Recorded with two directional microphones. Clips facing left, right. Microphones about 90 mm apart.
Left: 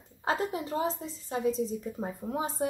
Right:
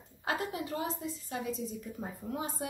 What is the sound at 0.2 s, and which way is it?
A woman's voice, 30° left (ahead or behind).